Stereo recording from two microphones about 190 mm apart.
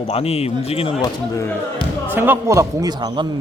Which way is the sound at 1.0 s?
15° left (ahead or behind).